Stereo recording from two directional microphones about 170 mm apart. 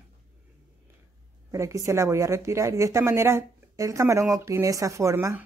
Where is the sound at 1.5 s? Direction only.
15° right (ahead or behind).